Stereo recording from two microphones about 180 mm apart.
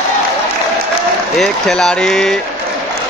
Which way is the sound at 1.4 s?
5° left (ahead or behind).